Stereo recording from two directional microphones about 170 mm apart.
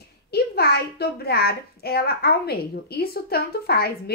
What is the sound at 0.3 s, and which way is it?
A child's voice, 70° left (ahead or behind).